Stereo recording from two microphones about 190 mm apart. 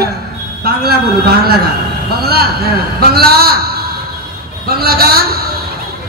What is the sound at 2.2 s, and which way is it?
A man's voice, 55° right (ahead or behind).